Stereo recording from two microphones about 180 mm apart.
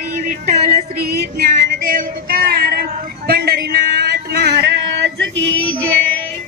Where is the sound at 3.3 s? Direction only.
60° right (ahead or behind).